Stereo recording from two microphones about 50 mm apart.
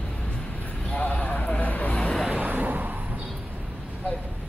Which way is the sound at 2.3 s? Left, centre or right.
Right.